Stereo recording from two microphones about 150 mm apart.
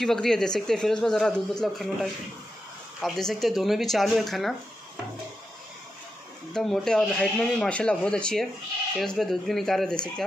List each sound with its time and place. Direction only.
0.0 s speech: centre (ahead or behind)
3.0 s speech: centre (ahead or behind)
6.5 s speech: centre (ahead or behind)